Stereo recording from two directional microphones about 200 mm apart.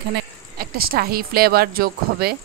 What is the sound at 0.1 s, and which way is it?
Speech, 50° right (ahead or behind).